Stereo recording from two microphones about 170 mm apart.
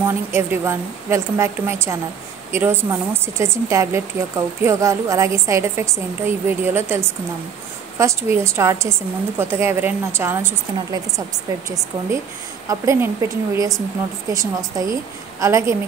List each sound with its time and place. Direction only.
0.0 s a woman's voice: 15° right (ahead or behind)
12.6 s a woman's voice: 15° right (ahead or behind)